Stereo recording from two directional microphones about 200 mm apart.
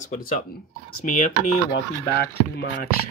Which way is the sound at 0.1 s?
45° left (ahead or behind).